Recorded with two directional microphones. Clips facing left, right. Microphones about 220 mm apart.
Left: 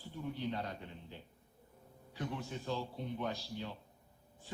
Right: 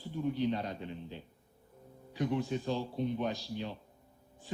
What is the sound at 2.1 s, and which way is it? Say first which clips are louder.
Speech: right 9 dB; 15° right (ahead or behind).